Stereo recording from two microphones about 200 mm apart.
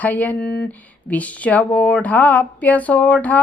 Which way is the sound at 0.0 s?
10° left (ahead or behind).